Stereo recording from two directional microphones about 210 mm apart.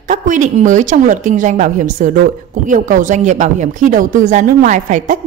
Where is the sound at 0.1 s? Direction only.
35° right (ahead or behind).